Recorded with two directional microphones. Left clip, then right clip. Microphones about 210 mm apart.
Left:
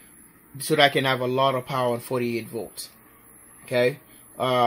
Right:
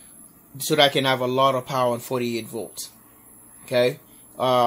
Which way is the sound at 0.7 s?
10° left (ahead or behind).